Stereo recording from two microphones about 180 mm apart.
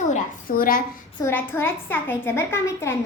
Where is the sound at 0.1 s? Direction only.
50° left (ahead or behind).